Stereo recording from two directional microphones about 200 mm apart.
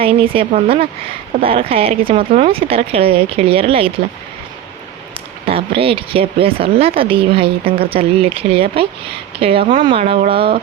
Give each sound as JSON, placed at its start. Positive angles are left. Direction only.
{"t": 0.0, "sound": "a woman's voice", "side_deg": -30}
{"t": 5.5, "sound": "a woman's voice", "side_deg": -30}